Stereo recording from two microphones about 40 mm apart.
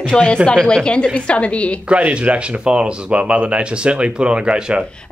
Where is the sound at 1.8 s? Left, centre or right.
Right.